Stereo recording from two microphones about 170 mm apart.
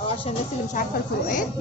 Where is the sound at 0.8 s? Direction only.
50° left (ahead or behind).